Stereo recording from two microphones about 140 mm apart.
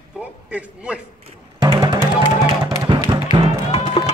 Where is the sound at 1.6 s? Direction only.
30° right (ahead or behind).